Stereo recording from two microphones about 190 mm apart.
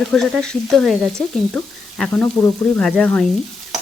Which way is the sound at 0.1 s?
5° left (ahead or behind).